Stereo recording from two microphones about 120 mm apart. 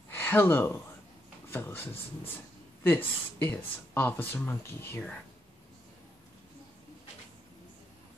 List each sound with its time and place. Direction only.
0.1 s speech: 15° left (ahead or behind)